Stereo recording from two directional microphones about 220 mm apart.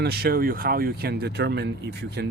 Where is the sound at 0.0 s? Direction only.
45° right (ahead or behind).